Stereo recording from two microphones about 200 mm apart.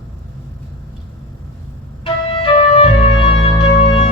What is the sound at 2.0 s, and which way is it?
Music, 25° left (ahead or behind).